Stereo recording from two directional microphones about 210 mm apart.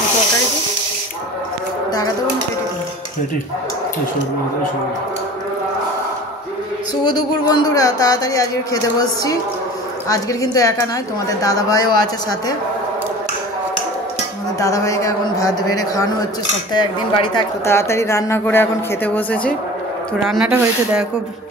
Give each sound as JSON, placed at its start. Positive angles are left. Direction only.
{"t": 7.0, "sound": "speech", "side_deg": 20}
{"t": 14.6, "sound": "speech", "side_deg": 15}
{"t": 20.2, "sound": "speech", "side_deg": -5}